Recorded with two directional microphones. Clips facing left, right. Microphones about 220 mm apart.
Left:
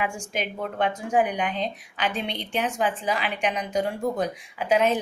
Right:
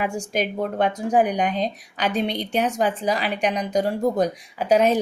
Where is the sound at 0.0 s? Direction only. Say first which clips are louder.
Right 5 dB; 40° right (ahead or behind).